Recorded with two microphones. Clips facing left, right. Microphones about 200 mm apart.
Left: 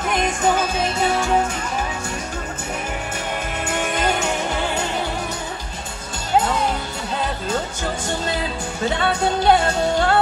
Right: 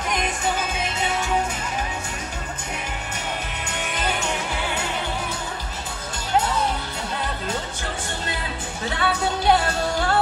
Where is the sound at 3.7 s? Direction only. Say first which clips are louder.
Left 6 dB; 45° left (ahead or behind).